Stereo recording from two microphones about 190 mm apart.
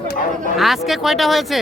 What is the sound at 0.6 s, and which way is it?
Speech, centre (ahead or behind).